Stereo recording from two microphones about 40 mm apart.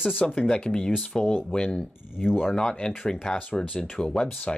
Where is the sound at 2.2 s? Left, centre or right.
Centre.